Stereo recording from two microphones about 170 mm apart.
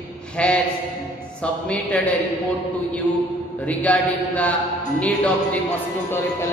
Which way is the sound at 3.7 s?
10° left (ahead or behind).